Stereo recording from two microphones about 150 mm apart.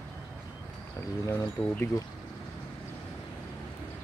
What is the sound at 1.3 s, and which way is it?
Speech, 20° left (ahead or behind).